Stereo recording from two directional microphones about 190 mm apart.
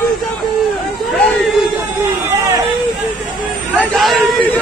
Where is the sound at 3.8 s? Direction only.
5° left (ahead or behind).